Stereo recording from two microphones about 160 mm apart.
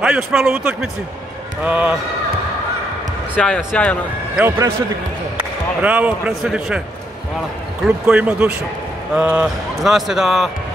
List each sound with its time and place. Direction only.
0.0 s speech: 5° right (ahead or behind)
1.6 s a man's voice: 10° right (ahead or behind)
3.3 s speech: 5° left (ahead or behind)
4.4 s a man's voice: 15° right (ahead or behind)
5.8 s a man's voice: 10° right (ahead or behind)
7.8 s a man's voice: 5° right (ahead or behind)